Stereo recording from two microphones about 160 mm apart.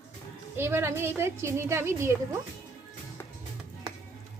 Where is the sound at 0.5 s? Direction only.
15° right (ahead or behind).